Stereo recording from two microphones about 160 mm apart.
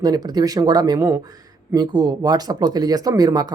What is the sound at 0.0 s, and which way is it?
Speech, 25° right (ahead or behind).